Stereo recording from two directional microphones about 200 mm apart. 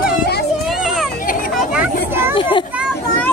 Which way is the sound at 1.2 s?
40° left (ahead or behind).